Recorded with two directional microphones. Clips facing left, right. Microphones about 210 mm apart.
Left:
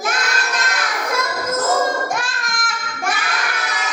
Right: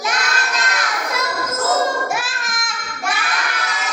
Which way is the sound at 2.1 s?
5° right (ahead or behind).